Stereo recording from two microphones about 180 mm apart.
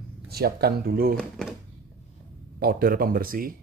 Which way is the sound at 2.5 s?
55° right (ahead or behind).